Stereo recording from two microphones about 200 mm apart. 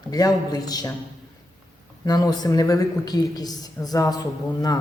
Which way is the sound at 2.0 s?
20° left (ahead or behind).